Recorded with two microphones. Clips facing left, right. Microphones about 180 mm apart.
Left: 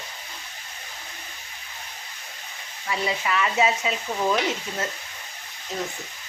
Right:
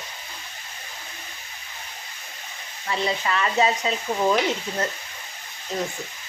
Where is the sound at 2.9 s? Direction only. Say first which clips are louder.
Right 1 dB; 5° left (ahead or behind).